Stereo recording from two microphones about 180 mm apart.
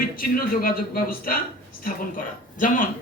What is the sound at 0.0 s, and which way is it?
A man's voice, 55° left (ahead or behind).